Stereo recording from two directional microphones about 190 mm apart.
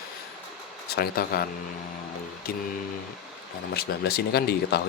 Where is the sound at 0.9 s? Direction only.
50° left (ahead or behind).